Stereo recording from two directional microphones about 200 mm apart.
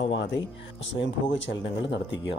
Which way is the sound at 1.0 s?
65° left (ahead or behind).